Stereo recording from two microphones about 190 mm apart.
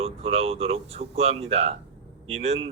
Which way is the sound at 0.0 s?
30° right (ahead or behind).